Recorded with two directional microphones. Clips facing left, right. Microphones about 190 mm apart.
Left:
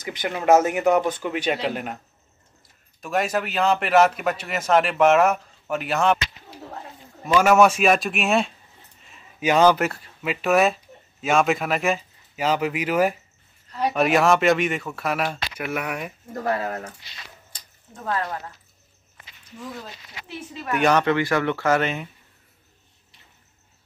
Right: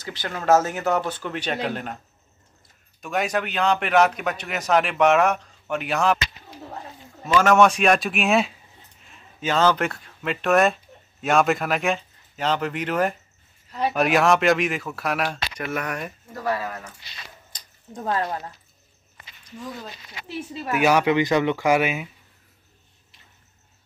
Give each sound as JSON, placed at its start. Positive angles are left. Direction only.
{"t": 0.0, "sound": "speech", "side_deg": 20}
{"t": 3.0, "sound": "a man's voice", "side_deg": 0}
{"t": 7.2, "sound": "a man's voice", "side_deg": 10}
{"t": 9.4, "sound": "a man's voice", "side_deg": 15}
{"t": 16.3, "sound": "speech", "side_deg": 50}
{"t": 17.9, "sound": "speech", "side_deg": -30}
{"t": 20.7, "sound": "speech", "side_deg": -10}